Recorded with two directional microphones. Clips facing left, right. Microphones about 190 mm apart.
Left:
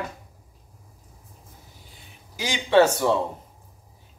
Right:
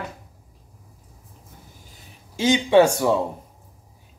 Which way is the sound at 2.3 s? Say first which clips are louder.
Right 3 dB; 20° right (ahead or behind).